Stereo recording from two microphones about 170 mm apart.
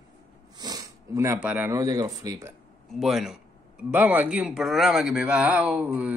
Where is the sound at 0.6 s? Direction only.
25° right (ahead or behind).